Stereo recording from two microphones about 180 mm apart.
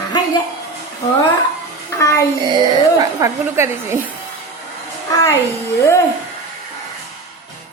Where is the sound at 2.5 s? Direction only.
20° right (ahead or behind).